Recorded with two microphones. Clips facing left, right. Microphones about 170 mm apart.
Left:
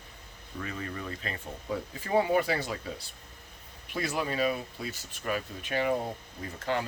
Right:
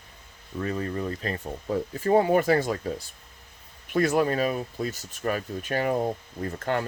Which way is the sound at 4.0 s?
50° right (ahead or behind).